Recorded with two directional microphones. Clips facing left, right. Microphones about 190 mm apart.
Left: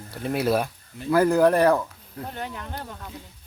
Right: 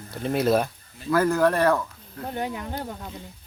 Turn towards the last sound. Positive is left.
turn(degrees=-20)  # may be behind; listen again after turning